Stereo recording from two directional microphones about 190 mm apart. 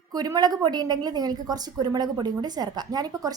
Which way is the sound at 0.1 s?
20° right (ahead or behind).